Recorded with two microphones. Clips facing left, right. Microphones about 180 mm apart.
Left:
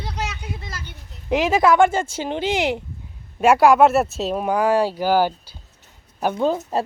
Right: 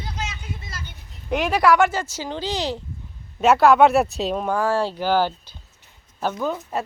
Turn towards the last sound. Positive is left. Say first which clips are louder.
# left 4 dB
turn(degrees=30)  # may be behind; listen again after turning